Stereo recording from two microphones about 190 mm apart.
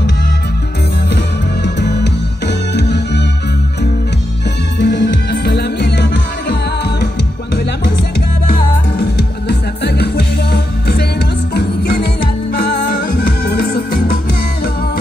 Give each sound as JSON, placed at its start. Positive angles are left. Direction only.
{"t": 1.1, "sound": "music", "side_deg": 65}
{"t": 4.7, "sound": "music", "side_deg": 65}
{"t": 8.9, "sound": "music", "side_deg": 60}